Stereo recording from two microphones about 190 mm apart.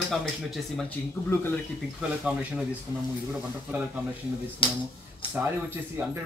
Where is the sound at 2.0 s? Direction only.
5° right (ahead or behind).